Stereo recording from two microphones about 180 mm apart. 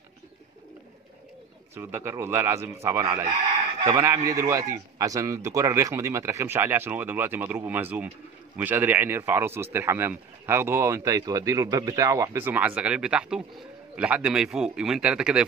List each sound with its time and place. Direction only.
1.8 s speech: 15° right (ahead or behind)